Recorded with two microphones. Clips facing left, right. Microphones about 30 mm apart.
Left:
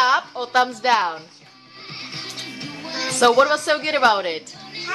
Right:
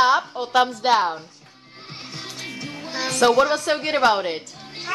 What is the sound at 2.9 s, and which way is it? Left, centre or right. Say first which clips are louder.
A woman's voice: left 2 dB; centre.